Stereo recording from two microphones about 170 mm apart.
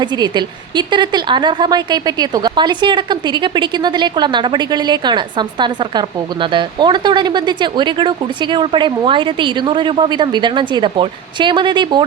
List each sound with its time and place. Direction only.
0.0 s speech: 25° right (ahead or behind)